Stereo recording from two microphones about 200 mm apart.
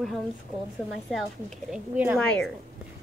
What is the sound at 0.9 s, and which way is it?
A woman's voice, centre (ahead or behind).